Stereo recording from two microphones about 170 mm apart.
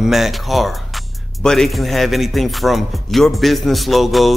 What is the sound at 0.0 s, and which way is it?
Speech, centre (ahead or behind).